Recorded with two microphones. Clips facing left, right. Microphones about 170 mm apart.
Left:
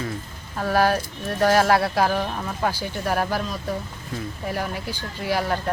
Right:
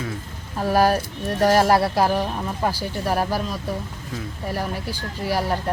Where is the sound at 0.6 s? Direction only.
10° right (ahead or behind).